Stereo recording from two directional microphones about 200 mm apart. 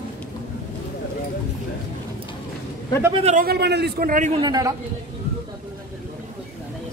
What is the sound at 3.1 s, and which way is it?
Speech, 30° right (ahead or behind).